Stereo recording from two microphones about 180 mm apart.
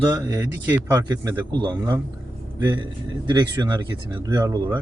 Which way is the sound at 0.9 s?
20° right (ahead or behind).